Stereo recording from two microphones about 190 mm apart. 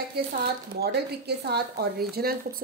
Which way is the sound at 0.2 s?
55° right (ahead or behind).